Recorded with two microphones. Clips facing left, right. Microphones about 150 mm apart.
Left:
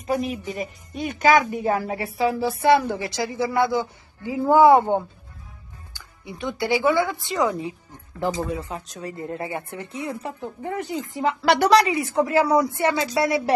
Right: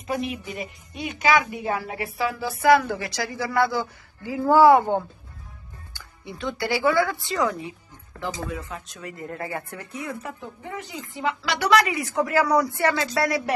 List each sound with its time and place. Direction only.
0.0 s a woman's voice: 40° left (ahead or behind)
9.1 s a woman's voice: 25° left (ahead or behind)
10.6 s speech: 50° left (ahead or behind)
11.4 s a woman's voice: 55° left (ahead or behind)
11.7 s a woman's voice: 25° left (ahead or behind)